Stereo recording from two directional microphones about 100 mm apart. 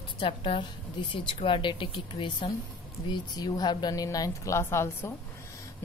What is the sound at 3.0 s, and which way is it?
A woman's voice, 45° left (ahead or behind).